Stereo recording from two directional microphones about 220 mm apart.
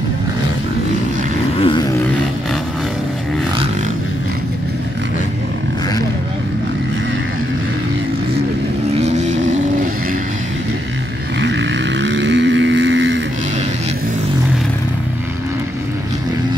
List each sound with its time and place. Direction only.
1.6 s vehicle: 20° left (ahead or behind)
9.0 s vehicle: 30° right (ahead or behind)
11.3 s vehicle: 55° right (ahead or behind)